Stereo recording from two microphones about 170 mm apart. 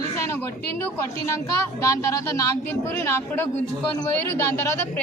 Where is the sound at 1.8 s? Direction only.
20° left (ahead or behind).